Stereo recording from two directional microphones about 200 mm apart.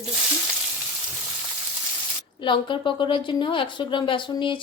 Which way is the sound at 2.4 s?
25° left (ahead or behind).